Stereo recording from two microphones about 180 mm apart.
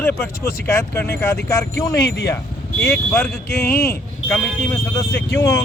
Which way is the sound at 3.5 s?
55° left (ahead or behind).